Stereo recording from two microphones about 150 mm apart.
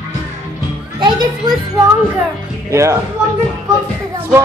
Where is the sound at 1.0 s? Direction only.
30° right (ahead or behind).